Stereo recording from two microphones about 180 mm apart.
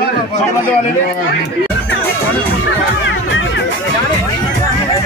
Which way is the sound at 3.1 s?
90° left.